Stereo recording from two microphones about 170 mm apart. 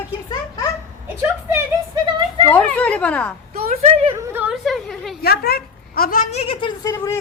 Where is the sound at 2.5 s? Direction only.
10° left (ahead or behind).